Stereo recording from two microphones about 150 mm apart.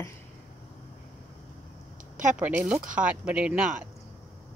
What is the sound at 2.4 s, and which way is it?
Speech, 10° right (ahead or behind).